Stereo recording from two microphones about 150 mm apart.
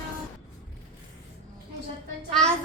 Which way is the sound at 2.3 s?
5° left (ahead or behind).